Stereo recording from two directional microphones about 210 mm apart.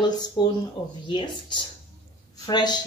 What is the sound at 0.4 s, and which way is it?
A woman's voice, 20° left (ahead or behind).